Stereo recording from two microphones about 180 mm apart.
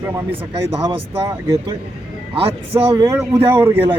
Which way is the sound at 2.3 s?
30° right (ahead or behind).